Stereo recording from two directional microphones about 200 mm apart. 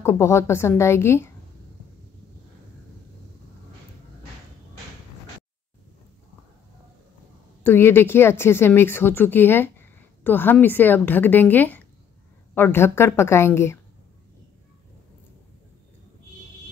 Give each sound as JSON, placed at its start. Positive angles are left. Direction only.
{"t": 0.0, "sound": "speech", "side_deg": 15}
{"t": 7.6, "sound": "speech", "side_deg": 10}